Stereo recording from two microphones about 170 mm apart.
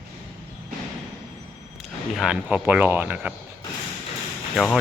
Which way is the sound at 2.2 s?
5° right (ahead or behind).